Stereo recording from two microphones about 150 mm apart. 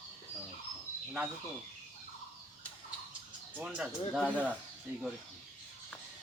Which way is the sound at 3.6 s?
5° right (ahead or behind).